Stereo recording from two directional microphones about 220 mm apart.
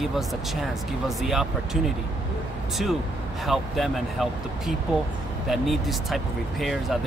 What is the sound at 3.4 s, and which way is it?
Speech, centre (ahead or behind).